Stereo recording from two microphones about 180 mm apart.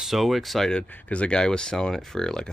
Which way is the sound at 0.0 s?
Centre (ahead or behind).